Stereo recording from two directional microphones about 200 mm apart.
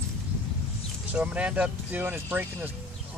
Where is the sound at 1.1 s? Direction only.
5° right (ahead or behind).